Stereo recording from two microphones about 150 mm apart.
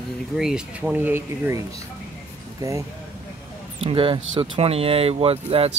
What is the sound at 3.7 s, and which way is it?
Speech, 35° right (ahead or behind).